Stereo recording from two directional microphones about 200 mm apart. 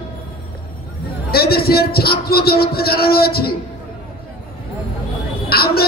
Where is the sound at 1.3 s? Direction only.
50° left (ahead or behind).